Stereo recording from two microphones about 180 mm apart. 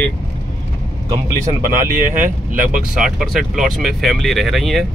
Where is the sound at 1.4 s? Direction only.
50° right (ahead or behind).